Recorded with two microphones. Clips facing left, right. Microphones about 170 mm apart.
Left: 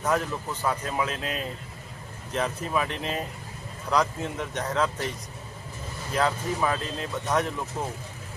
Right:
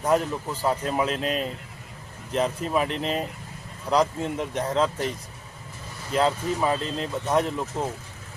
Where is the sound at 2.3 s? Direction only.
30° right (ahead or behind).